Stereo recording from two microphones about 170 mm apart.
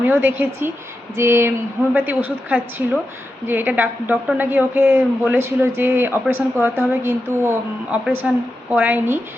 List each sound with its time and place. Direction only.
0.0 s a woman's voice: 10° right (ahead or behind)